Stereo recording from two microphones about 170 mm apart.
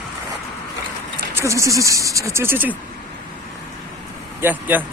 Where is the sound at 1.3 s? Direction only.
15° right (ahead or behind).